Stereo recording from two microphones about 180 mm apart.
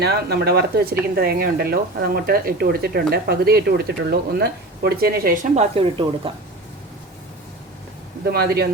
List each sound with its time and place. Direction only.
0.0 s speech: 60° right (ahead or behind); by 6.3 s 30° right (ahead or behind)
8.2 s speech: 60° right (ahead or behind)